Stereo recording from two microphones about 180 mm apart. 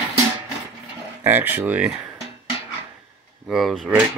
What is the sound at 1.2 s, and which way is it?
Speech, 10° right (ahead or behind).